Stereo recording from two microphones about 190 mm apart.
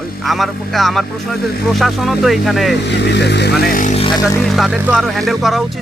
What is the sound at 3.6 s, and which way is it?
Speech, 45° left (ahead or behind).